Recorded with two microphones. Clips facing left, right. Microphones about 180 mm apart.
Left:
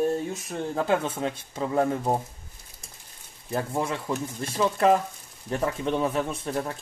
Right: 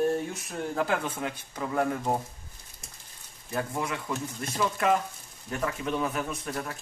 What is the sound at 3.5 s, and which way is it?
Speech, 30° left (ahead or behind).